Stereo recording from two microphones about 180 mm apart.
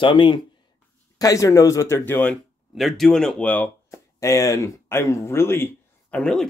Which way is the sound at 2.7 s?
Centre (ahead or behind).